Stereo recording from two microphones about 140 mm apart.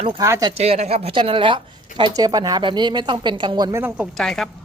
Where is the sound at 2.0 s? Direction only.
25° right (ahead or behind).